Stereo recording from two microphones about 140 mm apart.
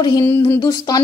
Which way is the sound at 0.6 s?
30° left (ahead or behind).